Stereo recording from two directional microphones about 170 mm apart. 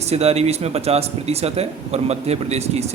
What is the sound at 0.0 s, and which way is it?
Speech, 40° right (ahead or behind).